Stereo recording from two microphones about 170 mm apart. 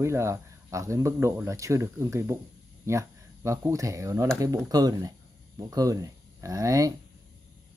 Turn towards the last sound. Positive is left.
turn(degrees=-20)  # may be behind; listen again after turning